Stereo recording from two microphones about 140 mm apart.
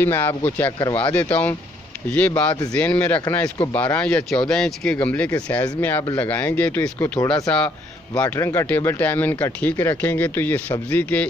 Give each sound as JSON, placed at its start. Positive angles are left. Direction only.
{"t": 0.0, "sound": "speech", "side_deg": 15}
{"t": 6.8, "sound": "speech", "side_deg": 25}
{"t": 7.4, "sound": "speech", "side_deg": 5}